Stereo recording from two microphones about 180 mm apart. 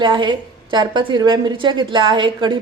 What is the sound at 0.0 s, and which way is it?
A woman's voice, 25° right (ahead or behind).